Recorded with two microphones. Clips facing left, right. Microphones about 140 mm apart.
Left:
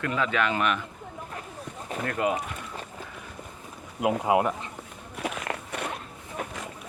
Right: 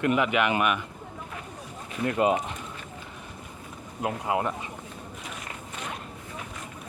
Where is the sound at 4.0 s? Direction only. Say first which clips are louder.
Left 5 dB; 15° left (ahead or behind).